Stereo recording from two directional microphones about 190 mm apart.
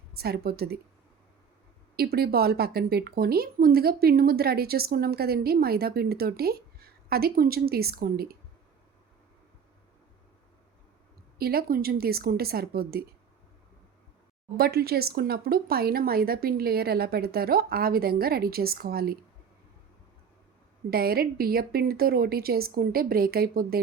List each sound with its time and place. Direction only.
0.2 s speech: 55° right (ahead or behind)
2.0 s speech: 55° right (ahead or behind)
11.3 s speech: 55° right (ahead or behind)
14.5 s speech: 55° right (ahead or behind)
20.9 s speech: 55° right (ahead or behind)